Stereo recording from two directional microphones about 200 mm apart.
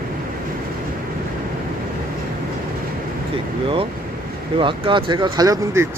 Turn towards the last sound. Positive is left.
turn(degrees=-15)  # may be behind; listen again after turning